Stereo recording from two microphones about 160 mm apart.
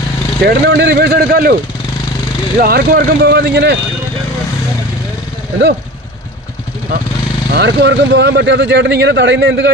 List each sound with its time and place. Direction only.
0.4 s speech: 90° right; by 1.5 s 70° right (ahead or behind)
2.6 s speech: 70° right (ahead or behind); by 3.8 s 90° right
7.5 s speech: 90° right